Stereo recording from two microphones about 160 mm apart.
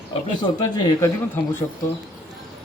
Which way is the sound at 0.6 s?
25° left (ahead or behind).